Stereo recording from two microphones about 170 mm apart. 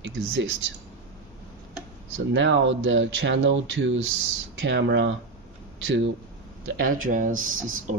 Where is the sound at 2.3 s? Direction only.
90° right.